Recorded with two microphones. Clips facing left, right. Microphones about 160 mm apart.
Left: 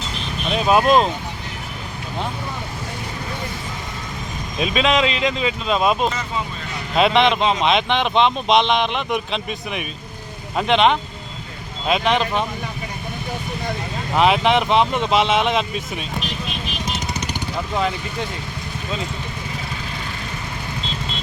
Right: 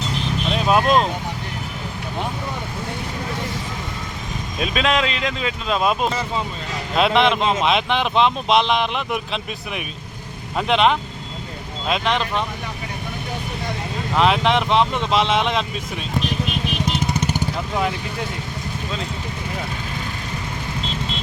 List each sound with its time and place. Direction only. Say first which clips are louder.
0.5 s speech: left 2 dB; 5° left (ahead or behind)
4.6 s speech: left 2 dB; centre (ahead or behind)
14.2 s speech: left 1 dB; 5° left (ahead or behind)
16.9 s vehicle: right 4 dB; 55° right (ahead or behind)